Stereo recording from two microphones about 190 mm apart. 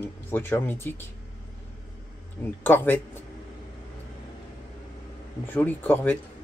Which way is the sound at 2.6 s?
10° left (ahead or behind).